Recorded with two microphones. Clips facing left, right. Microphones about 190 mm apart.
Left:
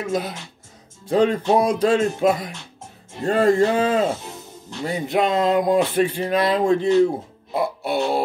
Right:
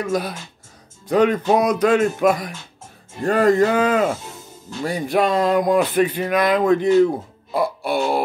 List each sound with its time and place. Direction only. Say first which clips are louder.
0.1 s speech: right 2 dB; 20° left (ahead or behind)
7.5 s music: right 1 dB; 25° left (ahead or behind)